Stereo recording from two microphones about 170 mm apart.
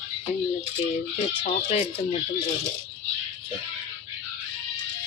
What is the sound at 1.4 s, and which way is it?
Speech, 40° left (ahead or behind).